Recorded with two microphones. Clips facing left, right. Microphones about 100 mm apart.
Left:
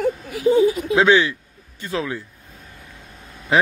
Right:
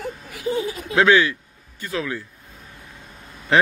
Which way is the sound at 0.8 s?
20° left (ahead or behind).